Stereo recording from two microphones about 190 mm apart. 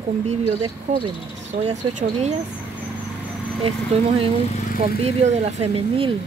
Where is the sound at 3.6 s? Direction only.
30° right (ahead or behind).